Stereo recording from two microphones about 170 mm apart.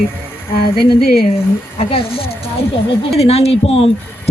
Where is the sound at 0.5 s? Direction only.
65° left (ahead or behind).